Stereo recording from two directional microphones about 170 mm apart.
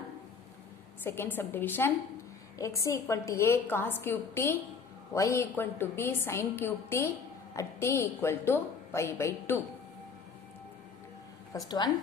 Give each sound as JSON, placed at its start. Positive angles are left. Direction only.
{"t": 1.0, "sound": "a woman's voice", "side_deg": 15}
{"t": 11.5, "sound": "speech", "side_deg": 20}